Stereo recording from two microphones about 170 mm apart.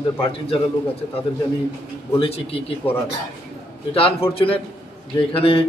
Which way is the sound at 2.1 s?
35° left (ahead or behind).